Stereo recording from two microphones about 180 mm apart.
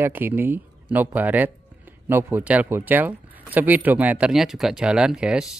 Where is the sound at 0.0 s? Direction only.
10° right (ahead or behind).